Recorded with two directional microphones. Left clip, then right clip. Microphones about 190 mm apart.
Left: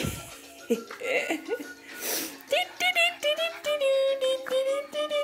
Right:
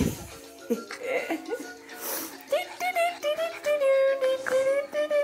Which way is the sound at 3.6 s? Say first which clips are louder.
Right 3 dB; 10° left (ahead or behind).